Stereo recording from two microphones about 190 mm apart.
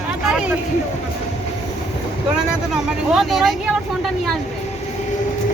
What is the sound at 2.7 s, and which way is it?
Speech, centre (ahead or behind).